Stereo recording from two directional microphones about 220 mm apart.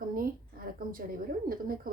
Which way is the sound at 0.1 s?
40° right (ahead or behind).